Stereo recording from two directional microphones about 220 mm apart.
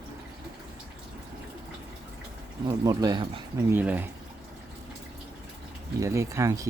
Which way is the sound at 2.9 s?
15° right (ahead or behind).